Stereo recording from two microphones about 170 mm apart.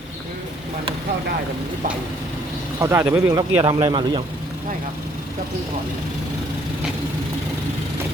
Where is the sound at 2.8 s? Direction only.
15° right (ahead or behind).